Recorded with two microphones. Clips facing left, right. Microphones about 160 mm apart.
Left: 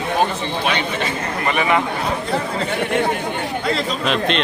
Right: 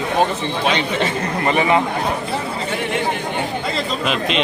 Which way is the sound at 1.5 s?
25° right (ahead or behind).